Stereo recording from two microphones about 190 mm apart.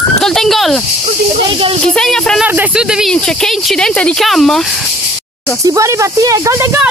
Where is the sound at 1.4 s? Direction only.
30° right (ahead or behind).